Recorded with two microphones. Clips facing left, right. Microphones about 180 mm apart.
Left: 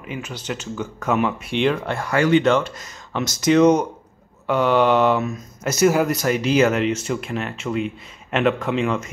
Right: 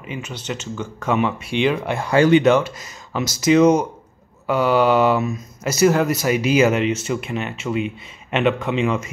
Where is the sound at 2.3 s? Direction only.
10° right (ahead or behind).